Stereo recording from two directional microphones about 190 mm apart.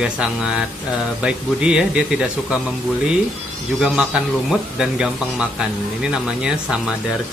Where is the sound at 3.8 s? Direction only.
5° right (ahead or behind).